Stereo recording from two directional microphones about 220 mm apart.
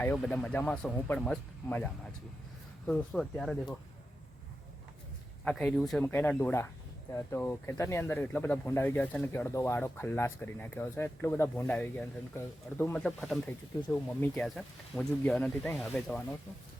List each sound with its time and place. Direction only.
0.0 s speech: 5° left (ahead or behind)
5.5 s speech: 5° left (ahead or behind)
13.7 s speech: 15° left (ahead or behind)
14.2 s speech: centre (ahead or behind)